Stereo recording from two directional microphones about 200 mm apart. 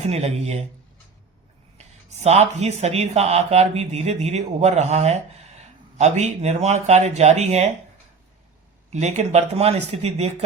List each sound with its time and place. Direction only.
0.0 s speech: 30° right (ahead or behind)
1.8 s speech: 30° right (ahead or behind)
8.9 s speech: 35° right (ahead or behind)